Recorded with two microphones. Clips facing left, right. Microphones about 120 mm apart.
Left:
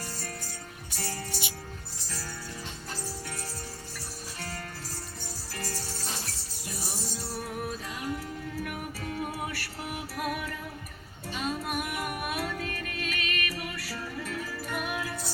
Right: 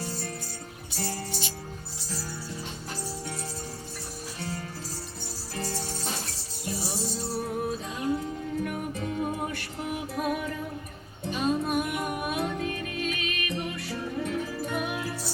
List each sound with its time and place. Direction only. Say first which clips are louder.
0.9 s music: right 3 dB; 15° right (ahead or behind)
5.5 s music: right 5 dB; 15° right (ahead or behind)
7.3 s music: right 5 dB; 30° right (ahead or behind)